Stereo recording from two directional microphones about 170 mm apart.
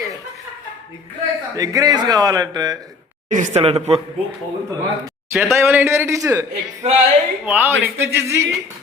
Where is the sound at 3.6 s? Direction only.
35° right (ahead or behind).